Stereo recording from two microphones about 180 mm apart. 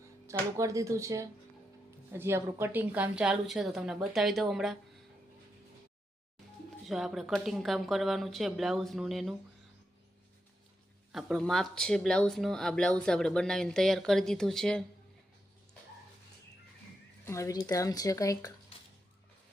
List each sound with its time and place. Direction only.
0.3 s speech: 15° right (ahead or behind); by 4.8 s centre (ahead or behind)
6.8 s speech: centre (ahead or behind)
11.1 s speech: centre (ahead or behind)
17.2 s speech: 15° left (ahead or behind)